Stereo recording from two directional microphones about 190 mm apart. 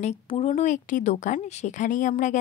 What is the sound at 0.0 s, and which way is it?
Speech, 35° left (ahead or behind).